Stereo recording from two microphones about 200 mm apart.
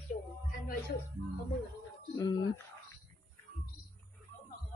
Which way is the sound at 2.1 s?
20° left (ahead or behind).